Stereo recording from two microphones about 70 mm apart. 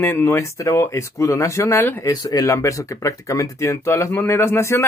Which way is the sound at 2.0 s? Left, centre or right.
Left.